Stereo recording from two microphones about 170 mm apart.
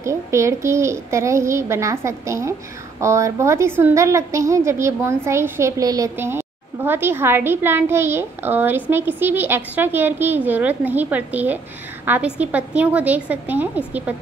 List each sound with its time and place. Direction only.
0.0 s a woman's voice: 15° right (ahead or behind)